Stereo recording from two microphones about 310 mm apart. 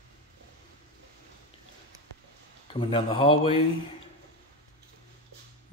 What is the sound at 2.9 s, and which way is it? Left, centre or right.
Speech, centre.